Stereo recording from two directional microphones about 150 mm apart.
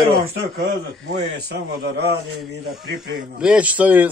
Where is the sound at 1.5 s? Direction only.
90° right.